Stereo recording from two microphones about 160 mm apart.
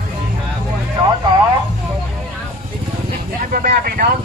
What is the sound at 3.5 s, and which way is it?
Speech, 65° right (ahead or behind).